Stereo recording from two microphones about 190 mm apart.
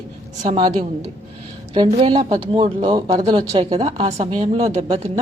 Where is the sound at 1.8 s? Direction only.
25° right (ahead or behind).